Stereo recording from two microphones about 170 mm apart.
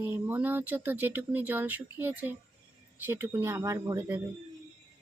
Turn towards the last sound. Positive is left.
turn(degrees=-15)  # may be behind; listen again after turning